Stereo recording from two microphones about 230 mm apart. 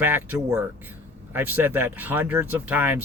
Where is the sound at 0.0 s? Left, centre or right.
Centre.